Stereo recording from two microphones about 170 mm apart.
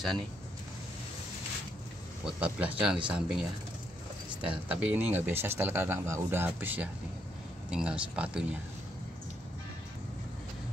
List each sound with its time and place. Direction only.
2.2 s speech: 5° right (ahead or behind)
4.6 s speech: 10° right (ahead or behind)